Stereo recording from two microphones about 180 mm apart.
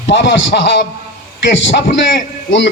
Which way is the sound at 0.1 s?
80° left.